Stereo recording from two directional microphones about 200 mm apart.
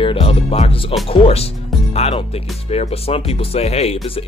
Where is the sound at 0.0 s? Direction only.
25° left (ahead or behind).